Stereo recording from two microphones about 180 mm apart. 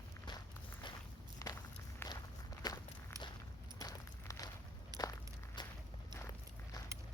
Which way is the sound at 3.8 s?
20° left (ahead or behind).